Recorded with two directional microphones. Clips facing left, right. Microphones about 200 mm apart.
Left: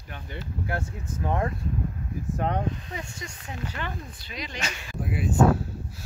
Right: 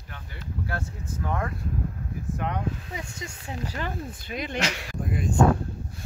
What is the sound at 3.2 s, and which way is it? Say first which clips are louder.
Speech: right 2 dB; 35° right (ahead or behind).